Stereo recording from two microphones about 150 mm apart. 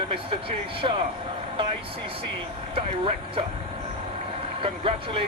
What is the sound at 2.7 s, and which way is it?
Speech, 35° right (ahead or behind).